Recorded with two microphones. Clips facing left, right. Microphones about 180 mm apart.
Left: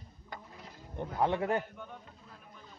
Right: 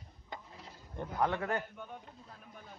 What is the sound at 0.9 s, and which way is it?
Speech, 20° left (ahead or behind).